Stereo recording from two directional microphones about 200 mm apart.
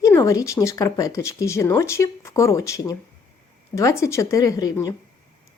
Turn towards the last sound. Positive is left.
turn(degrees=20)  # may be behind; listen again after turning